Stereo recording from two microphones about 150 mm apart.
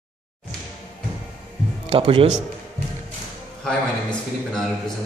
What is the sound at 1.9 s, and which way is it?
Speech, 40° right (ahead or behind).